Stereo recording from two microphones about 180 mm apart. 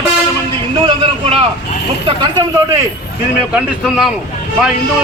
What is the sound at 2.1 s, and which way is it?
Speech, 20° right (ahead or behind).